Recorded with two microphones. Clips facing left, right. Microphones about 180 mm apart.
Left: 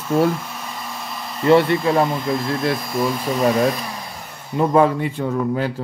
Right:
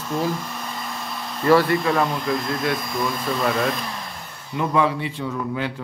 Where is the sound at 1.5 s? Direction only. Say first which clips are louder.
Left 3 dB; 25° left (ahead or behind).